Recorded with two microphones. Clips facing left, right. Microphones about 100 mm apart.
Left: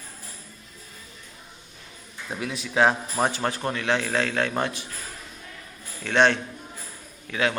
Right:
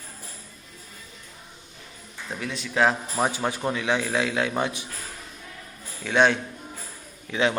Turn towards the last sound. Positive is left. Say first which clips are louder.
# right 2 dB
turn(degrees=-20)  # may be behind; listen again after turning